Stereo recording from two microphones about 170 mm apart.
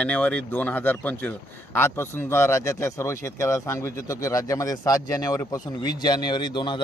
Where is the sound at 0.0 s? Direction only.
5° left (ahead or behind).